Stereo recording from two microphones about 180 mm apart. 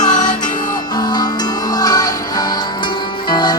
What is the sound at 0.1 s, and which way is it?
Music, 45° left (ahead or behind).